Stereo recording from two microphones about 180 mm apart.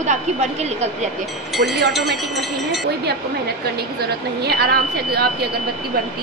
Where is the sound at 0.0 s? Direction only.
40° right (ahead or behind).